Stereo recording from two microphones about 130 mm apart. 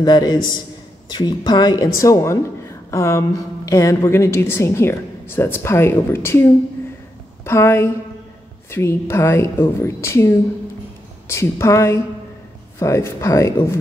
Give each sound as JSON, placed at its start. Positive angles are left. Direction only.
{"t": 0.0, "sound": "a woman's voice", "side_deg": 35}
{"t": 7.4, "sound": "a woman's voice", "side_deg": 20}